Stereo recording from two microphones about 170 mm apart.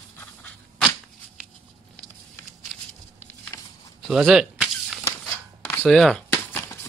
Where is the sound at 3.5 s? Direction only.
15° left (ahead or behind).